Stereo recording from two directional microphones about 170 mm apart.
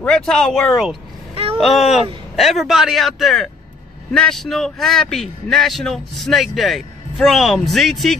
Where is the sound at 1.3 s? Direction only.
35° right (ahead or behind).